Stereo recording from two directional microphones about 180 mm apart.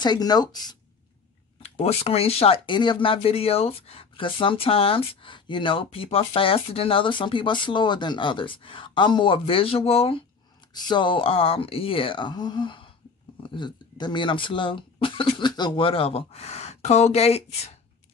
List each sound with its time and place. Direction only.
0.0 s speech: 25° left (ahead or behind)
1.6 s speech: 35° left (ahead or behind)